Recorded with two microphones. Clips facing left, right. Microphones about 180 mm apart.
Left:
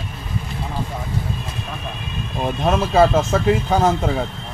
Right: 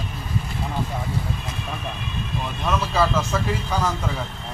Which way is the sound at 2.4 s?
50° left (ahead or behind).